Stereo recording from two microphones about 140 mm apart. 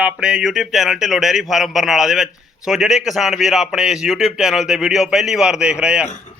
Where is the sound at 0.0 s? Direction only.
5° right (ahead or behind).